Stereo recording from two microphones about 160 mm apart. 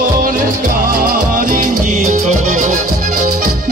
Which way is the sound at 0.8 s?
60° right (ahead or behind).